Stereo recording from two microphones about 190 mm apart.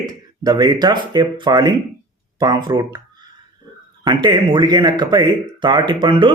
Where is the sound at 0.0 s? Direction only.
20° right (ahead or behind).